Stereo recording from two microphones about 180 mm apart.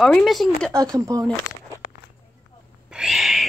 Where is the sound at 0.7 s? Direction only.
20° right (ahead or behind).